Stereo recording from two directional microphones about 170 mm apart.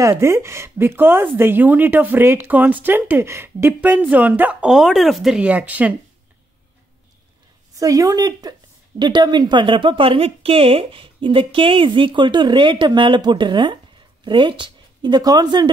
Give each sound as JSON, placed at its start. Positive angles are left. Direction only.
{"t": 0.0, "sound": "a woman's voice", "side_deg": -15}
{"t": 7.7, "sound": "speech", "side_deg": -20}